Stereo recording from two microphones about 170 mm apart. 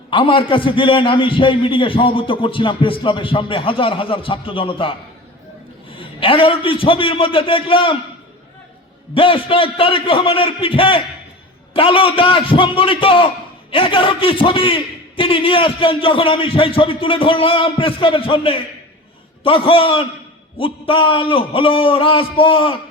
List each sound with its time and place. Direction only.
0.1 s a man's voice: 30° left (ahead or behind)
6.0 s a man's voice: 30° left (ahead or behind)
9.1 s a man's voice: 30° left (ahead or behind)